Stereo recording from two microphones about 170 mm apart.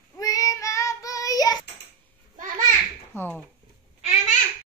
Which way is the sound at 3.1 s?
10° left (ahead or behind).